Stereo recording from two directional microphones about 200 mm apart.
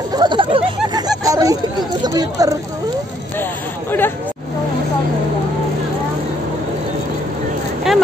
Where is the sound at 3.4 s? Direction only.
10° left (ahead or behind).